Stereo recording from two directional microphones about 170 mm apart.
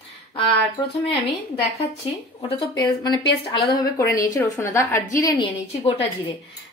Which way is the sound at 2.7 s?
25° left (ahead or behind).